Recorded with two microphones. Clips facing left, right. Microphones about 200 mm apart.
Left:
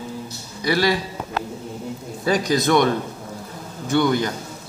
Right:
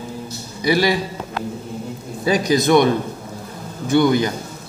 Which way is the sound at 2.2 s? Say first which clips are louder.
Right 3 dB; 10° right (ahead or behind).